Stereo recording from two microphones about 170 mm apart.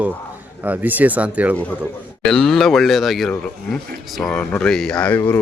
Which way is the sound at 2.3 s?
5° left (ahead or behind).